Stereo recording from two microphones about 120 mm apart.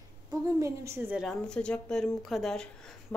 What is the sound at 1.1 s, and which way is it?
Speech, 5° left (ahead or behind).